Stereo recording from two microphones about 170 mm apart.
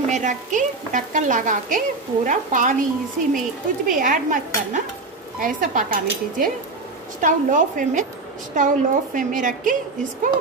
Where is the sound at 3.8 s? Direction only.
50° right (ahead or behind).